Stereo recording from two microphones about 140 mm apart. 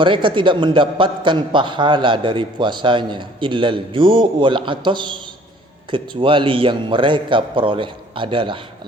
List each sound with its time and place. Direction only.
0.0 s a man's voice: 35° right (ahead or behind)